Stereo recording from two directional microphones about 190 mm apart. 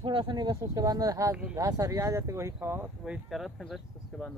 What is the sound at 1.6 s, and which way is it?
Speech, 15° right (ahead or behind).